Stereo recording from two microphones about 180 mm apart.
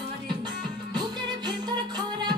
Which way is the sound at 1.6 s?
25° right (ahead or behind).